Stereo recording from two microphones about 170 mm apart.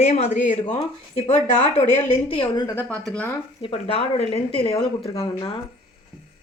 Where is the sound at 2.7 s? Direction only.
10° left (ahead or behind).